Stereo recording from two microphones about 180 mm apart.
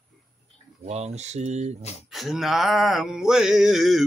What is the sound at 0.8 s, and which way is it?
Speech, 35° right (ahead or behind).